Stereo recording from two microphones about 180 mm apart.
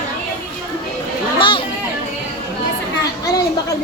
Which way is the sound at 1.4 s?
30° left (ahead or behind).